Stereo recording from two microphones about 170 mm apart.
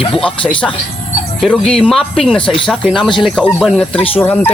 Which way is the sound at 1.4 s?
5° left (ahead or behind).